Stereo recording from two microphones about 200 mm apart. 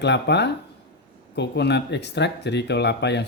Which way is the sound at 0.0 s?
60° left (ahead or behind).